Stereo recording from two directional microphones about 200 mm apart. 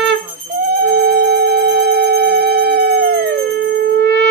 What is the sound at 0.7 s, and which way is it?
Music, 50° right (ahead or behind).